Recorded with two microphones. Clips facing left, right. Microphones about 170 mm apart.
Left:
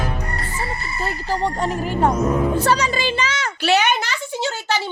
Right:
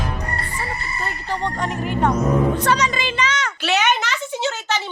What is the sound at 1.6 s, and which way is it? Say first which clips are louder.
A woman's voice: left 2 dB; 35° left (ahead or behind).